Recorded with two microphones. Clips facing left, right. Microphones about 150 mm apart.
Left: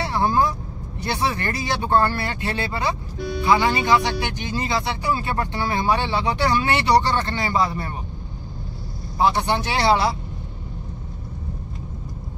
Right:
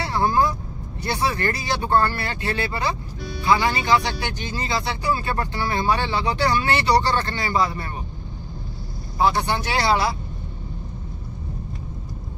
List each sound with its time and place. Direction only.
0.0 s vehicle: 20° left (ahead or behind)
1.0 s speech: 20° left (ahead or behind)
9.2 s speech: 25° left (ahead or behind)